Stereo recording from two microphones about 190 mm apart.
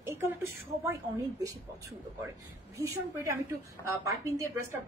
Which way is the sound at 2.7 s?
15° right (ahead or behind).